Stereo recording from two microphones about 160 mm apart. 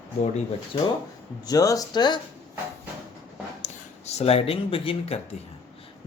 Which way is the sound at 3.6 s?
40° left (ahead or behind).